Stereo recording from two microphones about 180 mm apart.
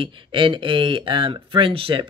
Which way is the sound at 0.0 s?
30° right (ahead or behind).